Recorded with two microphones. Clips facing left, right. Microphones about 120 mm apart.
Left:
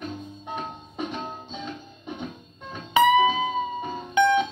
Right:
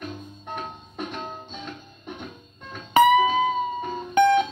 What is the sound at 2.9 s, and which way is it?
Music, 45° right (ahead or behind).